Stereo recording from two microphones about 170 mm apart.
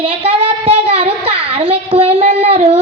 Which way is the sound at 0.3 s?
35° right (ahead or behind).